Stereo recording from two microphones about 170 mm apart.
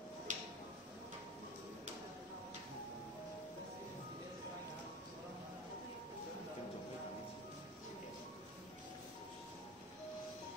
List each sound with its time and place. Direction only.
0.3 s tick-tock: 45° right (ahead or behind)